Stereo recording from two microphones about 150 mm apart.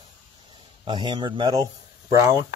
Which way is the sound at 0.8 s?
30° right (ahead or behind).